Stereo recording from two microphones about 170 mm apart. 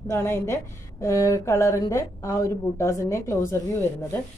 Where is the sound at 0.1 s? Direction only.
15° left (ahead or behind).